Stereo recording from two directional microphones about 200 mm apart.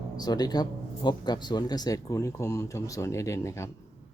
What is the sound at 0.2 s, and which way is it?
Speech, 20° left (ahead or behind).